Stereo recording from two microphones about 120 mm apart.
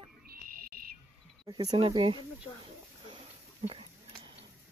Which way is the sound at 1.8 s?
45° right (ahead or behind).